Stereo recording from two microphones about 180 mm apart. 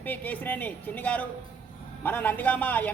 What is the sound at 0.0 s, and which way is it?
A woman's voice, 10° left (ahead or behind).